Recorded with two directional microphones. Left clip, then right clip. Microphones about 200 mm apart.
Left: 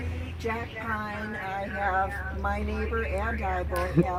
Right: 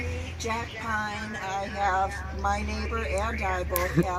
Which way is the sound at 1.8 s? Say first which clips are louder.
Right 1 dB; 20° left (ahead or behind).